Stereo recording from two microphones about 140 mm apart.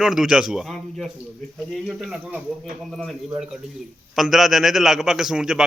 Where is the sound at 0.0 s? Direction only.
5° right (ahead or behind).